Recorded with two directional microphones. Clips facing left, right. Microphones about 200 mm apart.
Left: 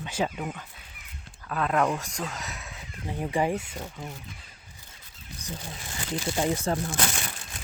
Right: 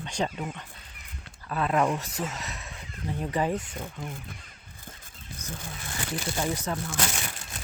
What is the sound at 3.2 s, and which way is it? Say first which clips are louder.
Speech: left 2 dB; 10° left (ahead or behind).